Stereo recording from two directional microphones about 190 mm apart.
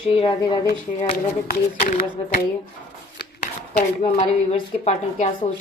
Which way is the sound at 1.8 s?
45° left (ahead or behind).